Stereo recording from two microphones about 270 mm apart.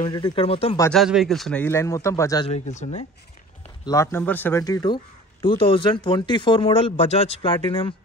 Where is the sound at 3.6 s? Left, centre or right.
Centre.